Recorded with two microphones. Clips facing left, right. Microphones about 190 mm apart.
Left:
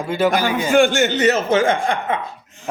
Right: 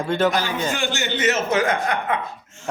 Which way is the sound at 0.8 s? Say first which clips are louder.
Left 11 dB; 50° left (ahead or behind).